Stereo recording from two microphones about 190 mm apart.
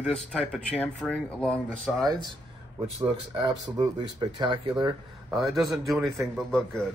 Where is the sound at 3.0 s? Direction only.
25° right (ahead or behind).